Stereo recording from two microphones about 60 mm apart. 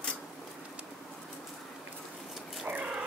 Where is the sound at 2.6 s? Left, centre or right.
Right.